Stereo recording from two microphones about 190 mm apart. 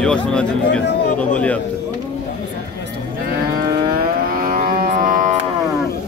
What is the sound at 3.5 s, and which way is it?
Livestock, 50° right (ahead or behind).